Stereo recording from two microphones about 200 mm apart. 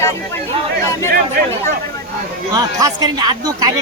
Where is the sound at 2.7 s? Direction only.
20° right (ahead or behind).